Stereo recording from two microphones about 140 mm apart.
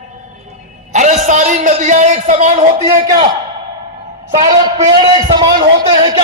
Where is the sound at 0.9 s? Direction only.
60° right (ahead or behind).